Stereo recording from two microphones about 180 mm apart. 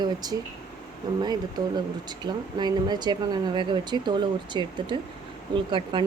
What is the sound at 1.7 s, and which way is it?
Speech, 25° right (ahead or behind).